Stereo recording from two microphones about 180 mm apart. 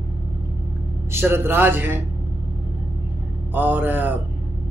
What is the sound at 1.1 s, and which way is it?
Speech, 10° right (ahead or behind).